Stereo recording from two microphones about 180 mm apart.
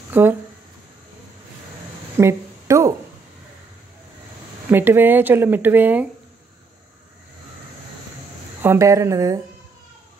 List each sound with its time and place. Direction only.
0.1 s speech: 10° right (ahead or behind)
2.1 s a sound: 15° right (ahead or behind)
4.6 s speech: 10° right (ahead or behind)
8.6 s speech: 15° right (ahead or behind)